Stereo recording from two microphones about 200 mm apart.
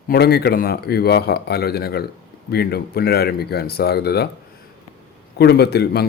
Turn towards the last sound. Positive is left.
turn(degrees=55)  # may be behind; listen again after turning